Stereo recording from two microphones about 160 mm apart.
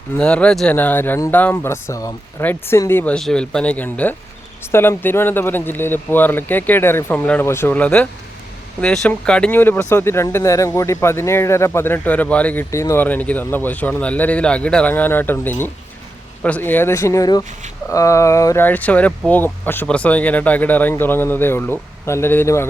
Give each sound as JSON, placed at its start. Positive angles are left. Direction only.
{"t": 0.2, "sound": "speech", "side_deg": 5}